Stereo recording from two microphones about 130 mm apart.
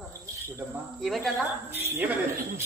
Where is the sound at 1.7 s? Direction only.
15° right (ahead or behind).